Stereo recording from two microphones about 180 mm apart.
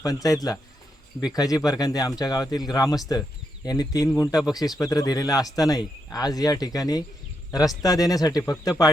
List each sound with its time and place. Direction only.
0.0 s speech: 20° left (ahead or behind)